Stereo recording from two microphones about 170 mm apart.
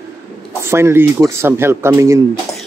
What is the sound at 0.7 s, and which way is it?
Speech, 15° right (ahead or behind).